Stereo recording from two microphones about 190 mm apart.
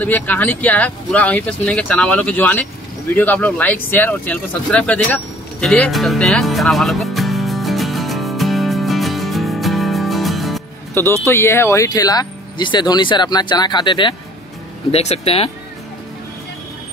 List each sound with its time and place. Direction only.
0.0 s speech: 10° left (ahead or behind)
3.2 s a sound: 10° left (ahead or behind)
11.0 s speech: 15° left (ahead or behind); by 15.5 s 30° left (ahead or behind)